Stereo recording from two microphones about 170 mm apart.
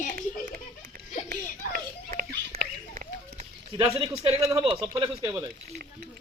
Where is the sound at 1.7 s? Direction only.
55° right (ahead or behind).